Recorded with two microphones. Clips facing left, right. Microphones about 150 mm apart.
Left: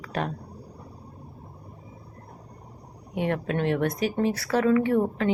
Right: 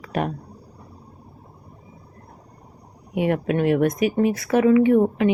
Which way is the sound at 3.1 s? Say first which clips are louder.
Right 5 dB; 10° right (ahead or behind).